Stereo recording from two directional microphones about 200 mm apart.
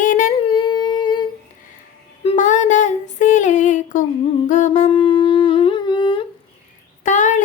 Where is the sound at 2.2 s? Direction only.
40° left (ahead or behind).